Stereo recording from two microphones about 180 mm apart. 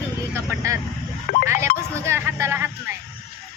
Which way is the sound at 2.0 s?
15° right (ahead or behind).